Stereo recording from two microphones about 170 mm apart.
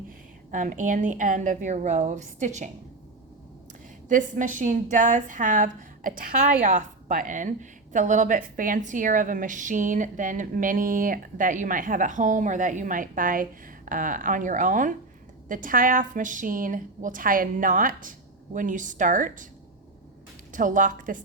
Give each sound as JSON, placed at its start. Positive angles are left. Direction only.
{"t": 0.5, "sound": "a woman's voice", "side_deg": -50}
{"t": 4.1, "sound": "a woman's voice", "side_deg": -50}
{"t": 20.5, "sound": "a woman's voice", "side_deg": -50}